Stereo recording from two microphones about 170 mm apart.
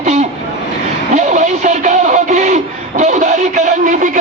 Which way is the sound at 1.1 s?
45° right (ahead or behind).